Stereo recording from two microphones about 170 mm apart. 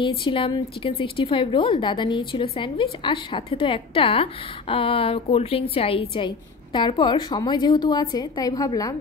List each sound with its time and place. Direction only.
0.0 s a woman's voice: 30° left (ahead or behind)